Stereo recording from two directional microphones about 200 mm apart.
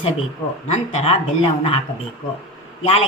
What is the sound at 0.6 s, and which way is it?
A woman's voice, 35° left (ahead or behind).